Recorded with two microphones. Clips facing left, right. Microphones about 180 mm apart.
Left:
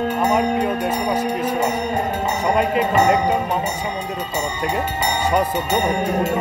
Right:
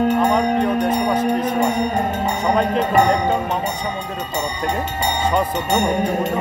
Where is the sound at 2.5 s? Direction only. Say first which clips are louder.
Right 1 dB; 10° left (ahead or behind).